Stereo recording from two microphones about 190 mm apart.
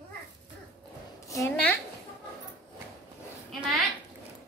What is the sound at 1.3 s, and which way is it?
Speech, 15° left (ahead or behind).